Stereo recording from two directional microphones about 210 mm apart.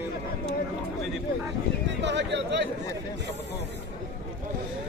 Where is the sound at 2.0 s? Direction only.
55° right (ahead or behind).